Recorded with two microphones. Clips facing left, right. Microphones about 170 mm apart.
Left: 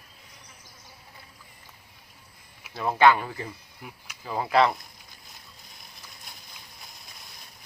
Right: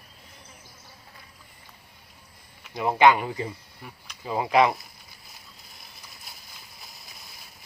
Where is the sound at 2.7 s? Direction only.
15° right (ahead or behind).